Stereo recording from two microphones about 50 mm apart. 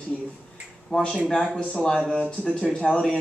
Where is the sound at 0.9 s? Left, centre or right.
Left.